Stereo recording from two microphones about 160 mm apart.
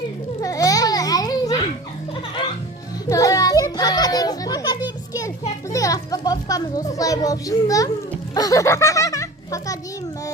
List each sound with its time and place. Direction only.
0.4 s babbling: 20° left (ahead or behind)
3.1 s children playing: 20° left (ahead or behind)
5.7 s a child's voice: 20° left (ahead or behind)
8.4 s a sound: 20° left (ahead or behind)